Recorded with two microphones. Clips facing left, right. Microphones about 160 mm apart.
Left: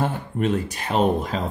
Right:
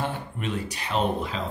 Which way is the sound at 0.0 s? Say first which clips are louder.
Left 7 dB; 45° left (ahead or behind).